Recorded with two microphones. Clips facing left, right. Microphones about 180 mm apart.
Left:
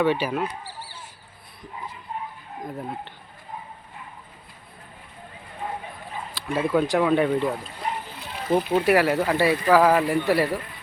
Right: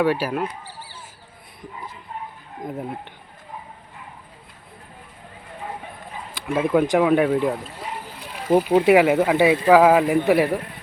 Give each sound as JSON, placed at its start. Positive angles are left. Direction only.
{"t": 0.0, "sound": "a man's voice", "side_deg": -5}
{"t": 2.6, "sound": "a man's voice", "side_deg": -15}
{"t": 6.3, "sound": "speech", "side_deg": -15}
{"t": 7.0, "sound": "a man's voice", "side_deg": -5}